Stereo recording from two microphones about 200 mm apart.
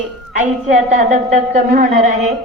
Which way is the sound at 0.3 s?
40° right (ahead or behind).